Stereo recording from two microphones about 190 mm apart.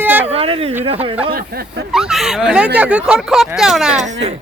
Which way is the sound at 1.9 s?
Centre (ahead or behind).